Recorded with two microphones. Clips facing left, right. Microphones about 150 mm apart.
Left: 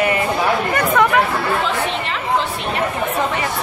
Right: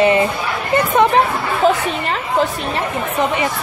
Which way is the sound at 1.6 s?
45° right (ahead or behind).